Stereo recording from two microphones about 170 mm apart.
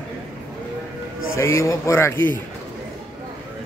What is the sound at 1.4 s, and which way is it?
A man's voice, 15° left (ahead or behind).